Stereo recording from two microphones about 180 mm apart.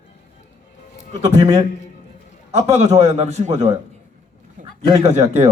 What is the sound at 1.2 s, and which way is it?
Speech, 35° right (ahead or behind).